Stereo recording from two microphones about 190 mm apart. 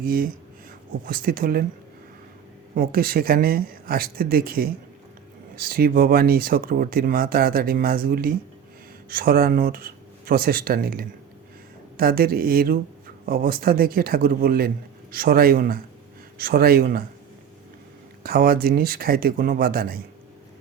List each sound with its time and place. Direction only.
0.0 s speech: 50° right (ahead or behind)
2.7 s speech: 50° right (ahead or behind)
18.2 s speech: 50° right (ahead or behind)